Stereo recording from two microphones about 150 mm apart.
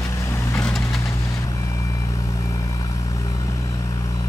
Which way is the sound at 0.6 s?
5° left (ahead or behind).